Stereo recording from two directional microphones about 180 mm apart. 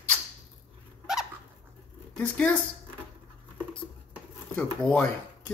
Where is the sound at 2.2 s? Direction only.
5° left (ahead or behind).